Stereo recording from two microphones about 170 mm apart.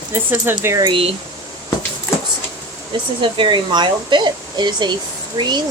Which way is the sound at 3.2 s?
30° right (ahead or behind).